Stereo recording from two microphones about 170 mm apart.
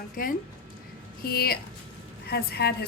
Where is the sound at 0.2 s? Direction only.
55° left (ahead or behind).